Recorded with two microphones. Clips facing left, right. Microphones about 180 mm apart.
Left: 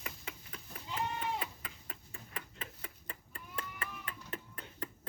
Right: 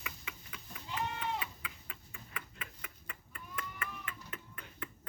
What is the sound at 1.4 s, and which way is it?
Tick-tock, 40° left (ahead or behind).